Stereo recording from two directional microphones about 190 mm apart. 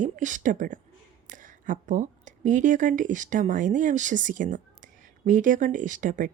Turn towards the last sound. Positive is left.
turn(degrees=-45)  # may be behind; listen again after turning